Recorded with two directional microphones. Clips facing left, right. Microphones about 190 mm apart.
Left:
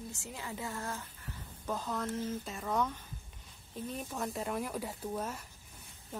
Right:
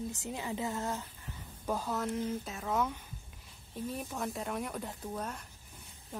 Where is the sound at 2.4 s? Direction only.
Centre (ahead or behind).